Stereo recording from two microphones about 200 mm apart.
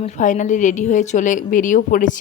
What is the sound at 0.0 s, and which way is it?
A woman's voice, 40° left (ahead or behind).